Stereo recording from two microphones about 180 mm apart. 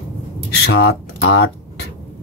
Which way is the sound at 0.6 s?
65° left (ahead or behind).